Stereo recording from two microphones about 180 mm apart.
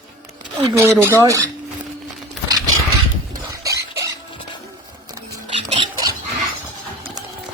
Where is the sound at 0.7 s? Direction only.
15° right (ahead or behind).